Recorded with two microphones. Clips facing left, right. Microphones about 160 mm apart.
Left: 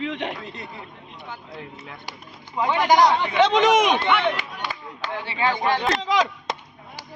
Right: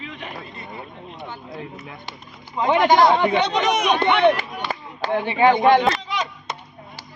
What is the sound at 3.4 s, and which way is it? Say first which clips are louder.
Speech: left 3 dB; 90° left.